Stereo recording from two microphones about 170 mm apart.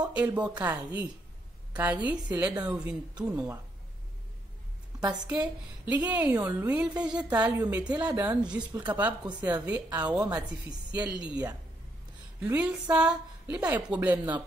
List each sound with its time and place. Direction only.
0.1 s a woman's voice: 5° right (ahead or behind)
5.2 s a woman's voice: 10° right (ahead or behind)
8.1 s a woman's voice: 20° right (ahead or behind)
8.4 s a woman's voice: 5° right (ahead or behind)
10.2 s a woman's voice: 20° right (ahead or behind)
11.0 s a woman's voice: 5° right (ahead or behind)